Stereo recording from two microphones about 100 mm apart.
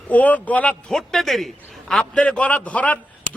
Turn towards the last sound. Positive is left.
turn(degrees=15)  # may be behind; listen again after turning